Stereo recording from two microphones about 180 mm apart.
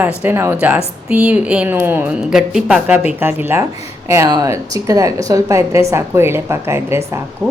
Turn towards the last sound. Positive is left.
turn(degrees=-15)  # may be behind; listen again after turning